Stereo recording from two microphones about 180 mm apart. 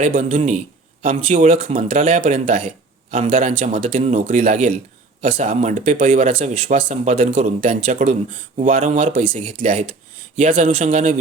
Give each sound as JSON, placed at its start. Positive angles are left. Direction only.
{"t": 0.0, "sound": "a man's voice", "side_deg": -45}
{"t": 1.5, "sound": "a man's voice", "side_deg": -30}
{"t": 1.9, "sound": "a man's voice", "side_deg": -45}